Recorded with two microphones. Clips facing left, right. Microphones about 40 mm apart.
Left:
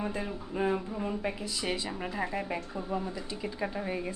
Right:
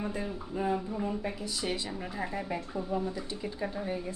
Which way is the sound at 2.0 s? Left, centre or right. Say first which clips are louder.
Left 3 dB; left.